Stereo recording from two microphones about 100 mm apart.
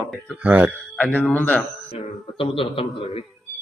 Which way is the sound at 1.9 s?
65° left (ahead or behind).